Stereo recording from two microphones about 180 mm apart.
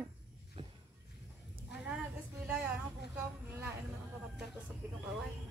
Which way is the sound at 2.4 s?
5° right (ahead or behind).